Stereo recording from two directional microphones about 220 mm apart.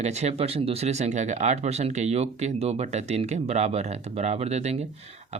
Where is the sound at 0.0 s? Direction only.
30° right (ahead or behind).